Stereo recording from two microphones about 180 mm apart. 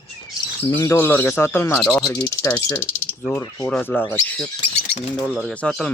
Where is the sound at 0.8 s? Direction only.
10° left (ahead or behind).